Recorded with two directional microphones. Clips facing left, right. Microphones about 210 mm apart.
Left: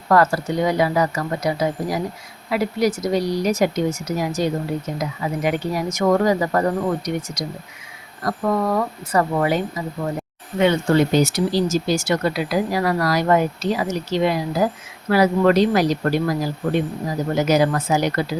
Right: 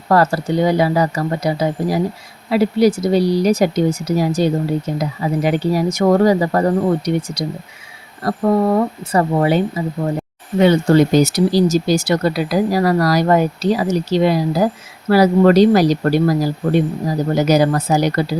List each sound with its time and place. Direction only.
0.1 s speech: 30° right (ahead or behind)